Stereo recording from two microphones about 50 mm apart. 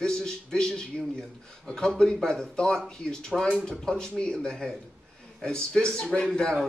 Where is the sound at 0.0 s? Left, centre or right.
Centre.